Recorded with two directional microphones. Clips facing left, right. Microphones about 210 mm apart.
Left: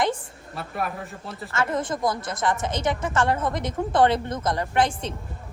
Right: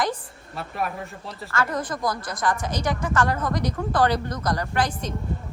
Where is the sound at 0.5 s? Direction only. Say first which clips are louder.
Even; centre (ahead or behind).